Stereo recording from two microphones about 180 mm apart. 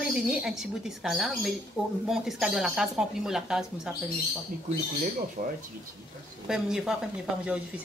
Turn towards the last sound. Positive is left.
turn(degrees=-5)  # may be behind; listen again after turning